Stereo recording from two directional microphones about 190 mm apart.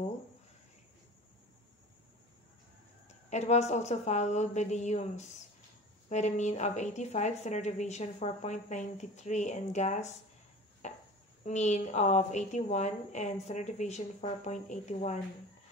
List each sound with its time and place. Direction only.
3.3 s a woman's voice: 35° left (ahead or behind)
10.8 s chop: 35° left (ahead or behind)
11.4 s a woman's voice: 40° left (ahead or behind)